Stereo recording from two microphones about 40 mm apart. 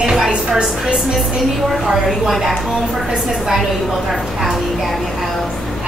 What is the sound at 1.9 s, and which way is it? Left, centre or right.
Speech, centre.